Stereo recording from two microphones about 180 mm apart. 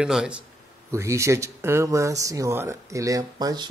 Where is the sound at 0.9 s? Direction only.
15° right (ahead or behind).